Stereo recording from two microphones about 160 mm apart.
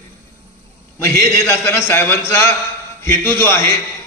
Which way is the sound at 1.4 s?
15° left (ahead or behind).